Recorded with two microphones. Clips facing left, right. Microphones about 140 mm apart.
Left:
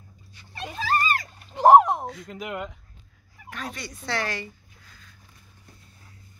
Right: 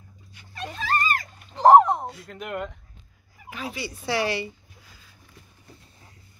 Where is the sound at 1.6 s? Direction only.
10° left (ahead or behind).